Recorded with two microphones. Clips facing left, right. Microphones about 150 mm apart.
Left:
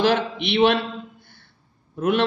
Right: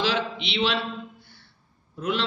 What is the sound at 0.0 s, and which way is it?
Speech, 50° left (ahead or behind).